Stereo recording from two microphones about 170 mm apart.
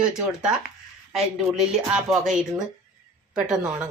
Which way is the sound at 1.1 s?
5° right (ahead or behind).